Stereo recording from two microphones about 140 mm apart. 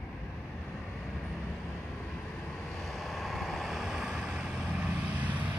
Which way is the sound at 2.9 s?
Centre (ahead or behind).